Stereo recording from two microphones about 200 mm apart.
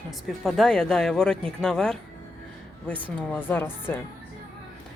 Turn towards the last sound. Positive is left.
turn(degrees=10)  # may be behind; listen again after turning